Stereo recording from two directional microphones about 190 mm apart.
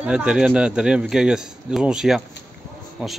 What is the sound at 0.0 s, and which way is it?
A man's voice, 5° right (ahead or behind).